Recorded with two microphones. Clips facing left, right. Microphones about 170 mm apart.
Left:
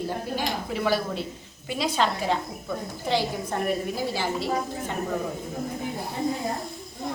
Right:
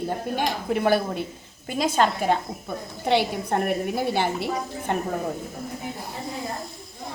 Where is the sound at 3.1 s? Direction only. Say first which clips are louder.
Right 4 dB; 60° right (ahead or behind).